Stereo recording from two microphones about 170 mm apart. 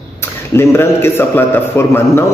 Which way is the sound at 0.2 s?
15° left (ahead or behind).